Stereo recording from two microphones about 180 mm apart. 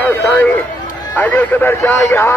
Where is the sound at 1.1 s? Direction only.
10° left (ahead or behind).